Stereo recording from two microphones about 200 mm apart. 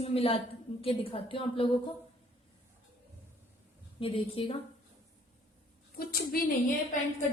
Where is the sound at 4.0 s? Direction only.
25° left (ahead or behind).